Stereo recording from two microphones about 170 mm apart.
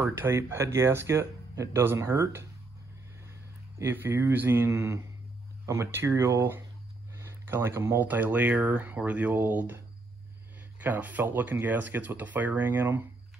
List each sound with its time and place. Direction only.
0.0 s speech: 15° right (ahead or behind)
3.8 s speech: 15° right (ahead or behind)
10.8 s speech: 10° right (ahead or behind)